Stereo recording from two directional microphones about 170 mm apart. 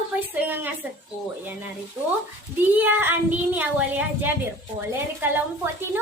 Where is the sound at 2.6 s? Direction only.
10° right (ahead or behind).